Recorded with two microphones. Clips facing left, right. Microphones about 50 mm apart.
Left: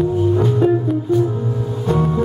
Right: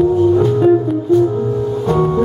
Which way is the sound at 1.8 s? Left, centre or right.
Centre.